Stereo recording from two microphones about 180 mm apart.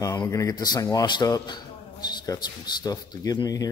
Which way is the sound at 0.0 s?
20° left (ahead or behind).